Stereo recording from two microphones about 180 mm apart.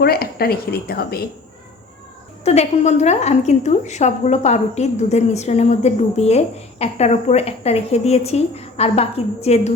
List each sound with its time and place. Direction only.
0.0 s speech: 60° left (ahead or behind)
2.4 s a woman's voice: 35° left (ahead or behind)